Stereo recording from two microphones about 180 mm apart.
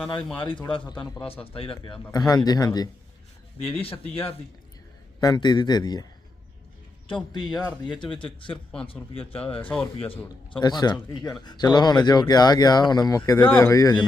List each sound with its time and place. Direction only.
0.3 s speech: 25° left (ahead or behind)
3.6 s speech: 30° left (ahead or behind)
7.9 s speech: 25° left (ahead or behind)
9.6 s speech: 10° left (ahead or behind)
10.5 s speech: 25° left (ahead or behind)